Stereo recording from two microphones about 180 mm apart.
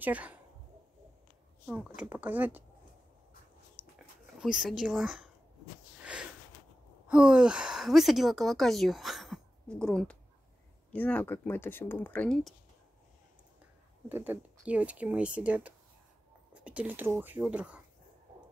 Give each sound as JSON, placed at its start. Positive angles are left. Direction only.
{"t": 0.0, "sound": "speech", "side_deg": -10}
{"t": 2.0, "sound": "speech", "side_deg": -10}
{"t": 3.8, "sound": "dog", "side_deg": -30}
{"t": 4.4, "sound": "speech", "side_deg": 0}
{"t": 7.1, "sound": "speech", "side_deg": -5}
{"t": 14.0, "sound": "speech", "side_deg": -10}